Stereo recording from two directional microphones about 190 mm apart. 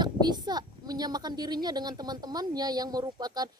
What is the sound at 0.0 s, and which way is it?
A woman's voice, 20° right (ahead or behind).